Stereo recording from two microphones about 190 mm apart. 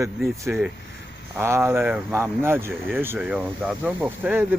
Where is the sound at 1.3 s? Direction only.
15° right (ahead or behind).